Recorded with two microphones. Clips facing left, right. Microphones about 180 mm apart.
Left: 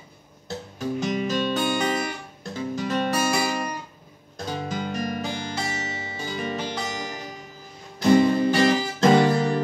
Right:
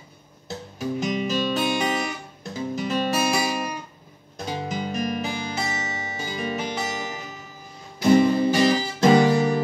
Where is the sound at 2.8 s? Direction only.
10° right (ahead or behind).